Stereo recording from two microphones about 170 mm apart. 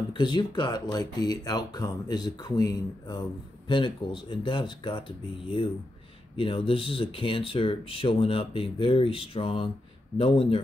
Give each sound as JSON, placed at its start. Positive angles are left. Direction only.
{"t": 0.1, "sound": "speech", "side_deg": 25}